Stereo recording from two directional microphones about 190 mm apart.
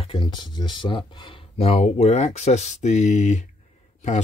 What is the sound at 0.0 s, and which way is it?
Speech, 25° left (ahead or behind).